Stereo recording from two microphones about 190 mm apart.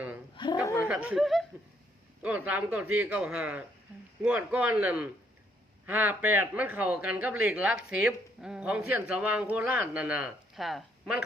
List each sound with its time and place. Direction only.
0.3 s chuckle: 25° left (ahead or behind)
0.9 s snicker: 5° right (ahead or behind)
2.2 s a woman's voice: 10° right (ahead or behind)